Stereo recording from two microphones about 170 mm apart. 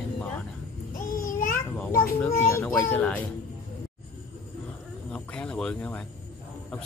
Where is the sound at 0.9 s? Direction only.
55° left (ahead or behind).